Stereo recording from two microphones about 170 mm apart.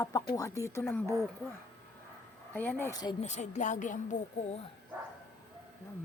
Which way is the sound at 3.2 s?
40° left (ahead or behind).